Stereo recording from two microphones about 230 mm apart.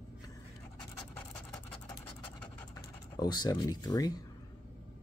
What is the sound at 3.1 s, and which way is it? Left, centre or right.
Speech, centre.